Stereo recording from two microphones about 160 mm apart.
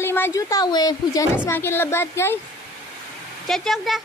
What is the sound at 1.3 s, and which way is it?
Speech, 15° left (ahead or behind).